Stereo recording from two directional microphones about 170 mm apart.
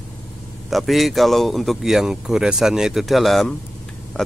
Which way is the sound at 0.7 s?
Centre (ahead or behind).